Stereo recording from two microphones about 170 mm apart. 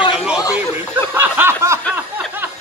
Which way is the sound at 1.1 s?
15° right (ahead or behind).